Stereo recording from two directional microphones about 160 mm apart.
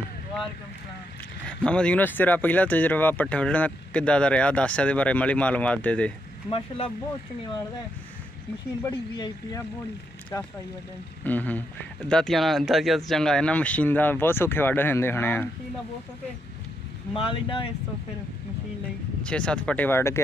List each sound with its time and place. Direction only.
1.6 s speech: 5° left (ahead or behind)
9.1 s speech: 25° left (ahead or behind)
11.2 s speech: 10° left (ahead or behind)
17.1 s speech: 35° left (ahead or behind)
19.2 s speech: 5° left (ahead or behind)